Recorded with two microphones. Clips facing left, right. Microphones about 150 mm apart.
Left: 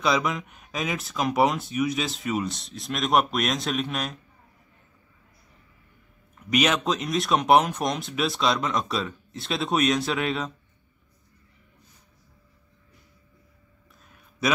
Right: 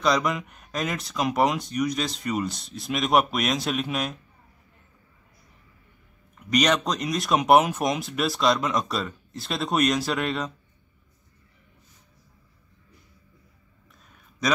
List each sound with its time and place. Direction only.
0.0 s speech: centre (ahead or behind)
6.5 s speech: 5° left (ahead or behind)